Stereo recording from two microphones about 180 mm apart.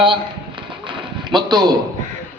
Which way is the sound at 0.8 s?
25° right (ahead or behind).